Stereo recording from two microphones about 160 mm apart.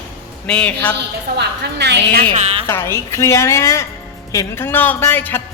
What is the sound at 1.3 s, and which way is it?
Speech, 90° right.